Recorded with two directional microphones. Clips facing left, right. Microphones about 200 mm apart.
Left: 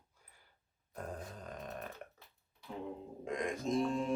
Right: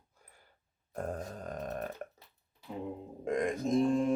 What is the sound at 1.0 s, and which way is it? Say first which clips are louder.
Grunt: right 7 dB; 50° right (ahead or behind).